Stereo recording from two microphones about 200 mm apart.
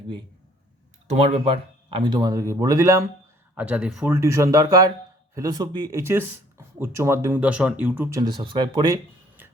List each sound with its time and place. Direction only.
1.0 s speech: 35° right (ahead or behind)